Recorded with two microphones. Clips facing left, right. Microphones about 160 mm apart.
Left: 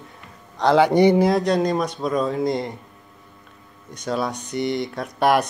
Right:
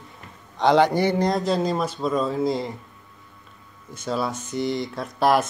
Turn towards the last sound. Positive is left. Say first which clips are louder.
# left 1 dB
turn(degrees=0)  # may be behind; listen again after turning